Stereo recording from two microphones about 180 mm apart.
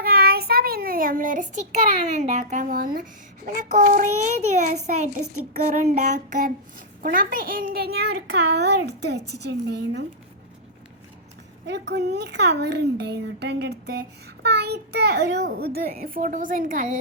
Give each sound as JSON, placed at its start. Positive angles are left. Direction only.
{"t": 0.0, "sound": "a child's voice", "side_deg": -60}
{"t": 11.6, "sound": "a child's voice", "side_deg": -70}